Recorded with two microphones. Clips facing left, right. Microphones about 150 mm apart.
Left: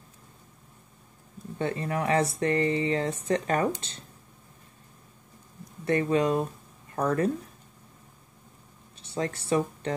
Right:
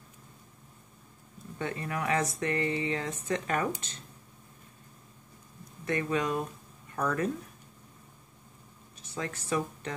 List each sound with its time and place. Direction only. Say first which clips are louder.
1.6 s speech: left 5 dB; 30° left (ahead or behind)
5.9 s speech: left 6 dB; 35° left (ahead or behind)
9.0 s speech: left 6 dB; 30° left (ahead or behind)